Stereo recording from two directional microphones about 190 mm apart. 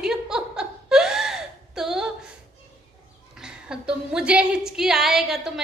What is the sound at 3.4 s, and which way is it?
A woman's voice, 5° right (ahead or behind).